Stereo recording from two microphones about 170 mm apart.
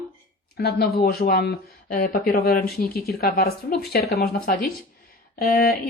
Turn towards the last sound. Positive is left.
turn(degrees=60)  # may be behind; listen again after turning